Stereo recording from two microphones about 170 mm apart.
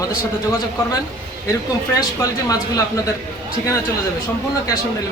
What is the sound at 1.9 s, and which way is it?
Speech, 20° left (ahead or behind).